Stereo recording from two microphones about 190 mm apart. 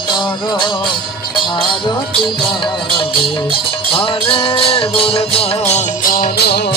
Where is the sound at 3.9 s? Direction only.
30° left (ahead or behind).